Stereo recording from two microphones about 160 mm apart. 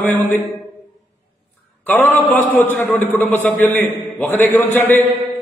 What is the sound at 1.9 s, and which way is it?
A man's voice, 15° left (ahead or behind).